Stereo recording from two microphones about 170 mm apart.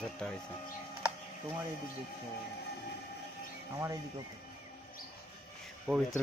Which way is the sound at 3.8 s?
20° right (ahead or behind).